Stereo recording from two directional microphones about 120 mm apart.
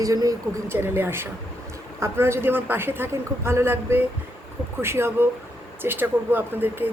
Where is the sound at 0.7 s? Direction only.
20° right (ahead or behind).